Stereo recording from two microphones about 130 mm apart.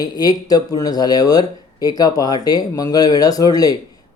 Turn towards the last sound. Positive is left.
turn(degrees=30)  # may be behind; listen again after turning